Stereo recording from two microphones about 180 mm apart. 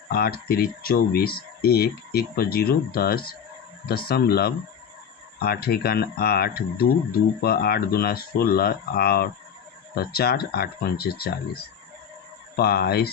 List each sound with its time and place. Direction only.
0.1 s speech: 60° left (ahead or behind)
12.5 s speech: 60° left (ahead or behind)